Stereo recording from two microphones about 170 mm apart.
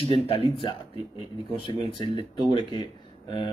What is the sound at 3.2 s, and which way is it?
Speech, 30° left (ahead or behind).